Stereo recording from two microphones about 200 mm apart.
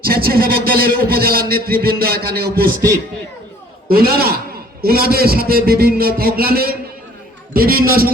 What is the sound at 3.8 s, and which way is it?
A man's voice, 50° right (ahead or behind).